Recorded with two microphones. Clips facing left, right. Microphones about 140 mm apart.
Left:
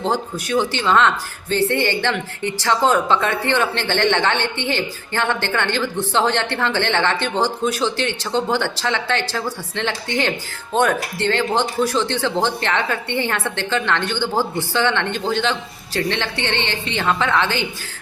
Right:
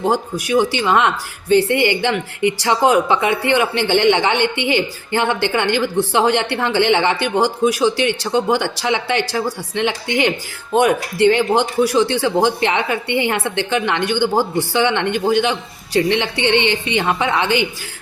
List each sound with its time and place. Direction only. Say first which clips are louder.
0.0 s a woman's voice: right 3 dB; 10° right (ahead or behind)